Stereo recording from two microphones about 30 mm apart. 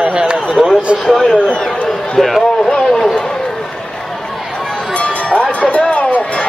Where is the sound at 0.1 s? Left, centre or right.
Right.